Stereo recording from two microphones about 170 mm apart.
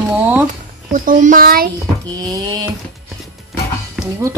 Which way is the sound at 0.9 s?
50° right (ahead or behind).